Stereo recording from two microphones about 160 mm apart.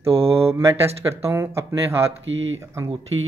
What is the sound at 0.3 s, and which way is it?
Speech, 15° right (ahead or behind).